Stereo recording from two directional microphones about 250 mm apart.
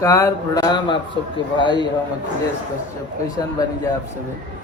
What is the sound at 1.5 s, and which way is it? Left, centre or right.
Speech, centre.